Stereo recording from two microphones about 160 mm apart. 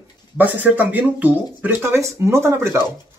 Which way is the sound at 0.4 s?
10° right (ahead or behind).